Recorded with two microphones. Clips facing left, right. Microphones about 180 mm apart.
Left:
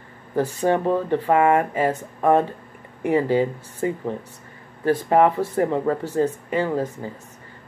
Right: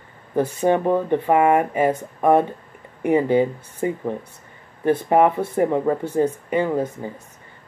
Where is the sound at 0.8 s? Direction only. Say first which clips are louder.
Right 1 dB; 15° right (ahead or behind).